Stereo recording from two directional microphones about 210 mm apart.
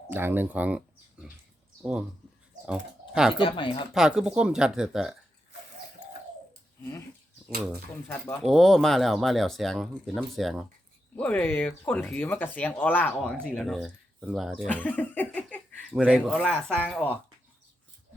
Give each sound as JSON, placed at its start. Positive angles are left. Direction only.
{"t": 0.1, "sound": "speech", "side_deg": -10}
{"t": 1.8, "sound": "speech", "side_deg": -5}
{"t": 3.3, "sound": "speech", "side_deg": 25}
{"t": 3.9, "sound": "speech", "side_deg": -5}
{"t": 8.0, "sound": "speech", "side_deg": 10}
{"t": 16.0, "sound": "speech", "side_deg": -5}